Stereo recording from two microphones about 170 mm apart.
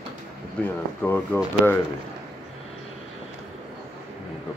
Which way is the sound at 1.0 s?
10° left (ahead or behind).